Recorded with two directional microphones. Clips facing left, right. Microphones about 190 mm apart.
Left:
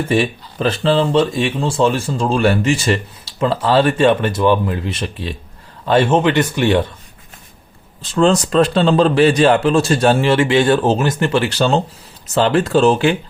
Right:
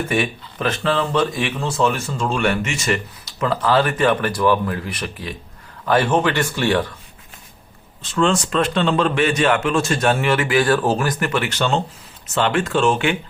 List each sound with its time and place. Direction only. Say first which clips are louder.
0.0 s speech: left 4 dB; 30° left (ahead or behind)
8.1 s a man's voice: left 5 dB; 35° left (ahead or behind)